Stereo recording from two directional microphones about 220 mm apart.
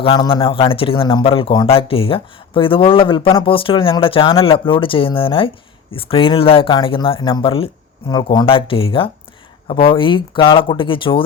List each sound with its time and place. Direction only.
0.0 s a man's voice: 25° left (ahead or behind)